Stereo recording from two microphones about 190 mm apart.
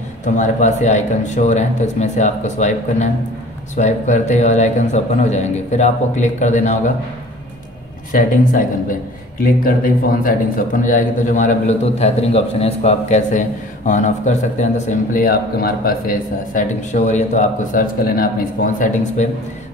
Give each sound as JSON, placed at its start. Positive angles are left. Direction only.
{"t": 0.2, "sound": "a man's voice", "side_deg": 40}
{"t": 8.1, "sound": "a man's voice", "side_deg": 45}